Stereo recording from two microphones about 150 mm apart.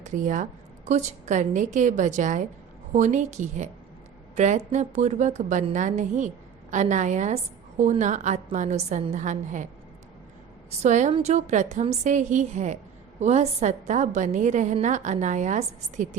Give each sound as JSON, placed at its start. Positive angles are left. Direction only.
{"t": 0.0, "sound": "a woman's voice", "side_deg": -55}
{"t": 10.8, "sound": "a woman's voice", "side_deg": -50}